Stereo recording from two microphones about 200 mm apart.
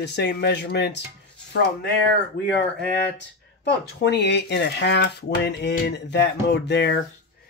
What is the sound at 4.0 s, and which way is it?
Speech, 60° left (ahead or behind).